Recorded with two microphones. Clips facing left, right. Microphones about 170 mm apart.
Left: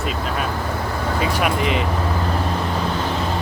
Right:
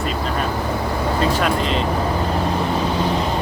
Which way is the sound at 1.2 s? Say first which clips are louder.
Even; 10° left (ahead or behind).